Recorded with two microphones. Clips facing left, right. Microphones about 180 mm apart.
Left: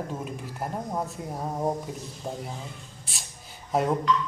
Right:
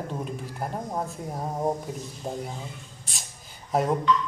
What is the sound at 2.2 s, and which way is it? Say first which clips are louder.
Speech: right 2 dB; 15° right (ahead or behind).